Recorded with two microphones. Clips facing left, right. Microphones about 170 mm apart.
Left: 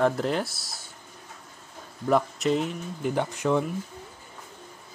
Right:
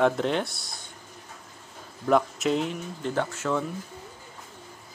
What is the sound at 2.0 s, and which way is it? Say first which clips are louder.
Speech: right 1 dB; centre (ahead or behind).